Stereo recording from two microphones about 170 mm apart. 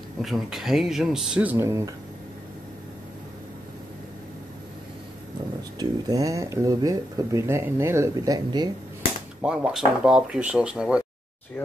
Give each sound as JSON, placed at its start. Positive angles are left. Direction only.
{"t": 0.2, "sound": "speech", "side_deg": 0}
{"t": 5.8, "sound": "speech", "side_deg": -20}
{"t": 9.4, "sound": "speech", "side_deg": -5}